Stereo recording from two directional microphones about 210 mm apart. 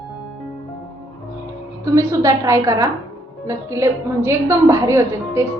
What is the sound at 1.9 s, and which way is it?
A woman's voice, 15° right (ahead or behind).